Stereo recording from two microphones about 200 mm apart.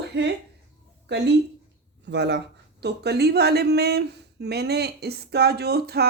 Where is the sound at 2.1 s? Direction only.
60° right (ahead or behind).